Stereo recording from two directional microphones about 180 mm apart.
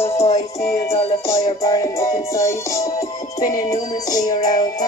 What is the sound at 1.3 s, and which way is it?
Music, 20° left (ahead or behind).